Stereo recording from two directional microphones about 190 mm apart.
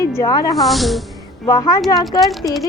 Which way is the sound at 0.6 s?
Centre (ahead or behind).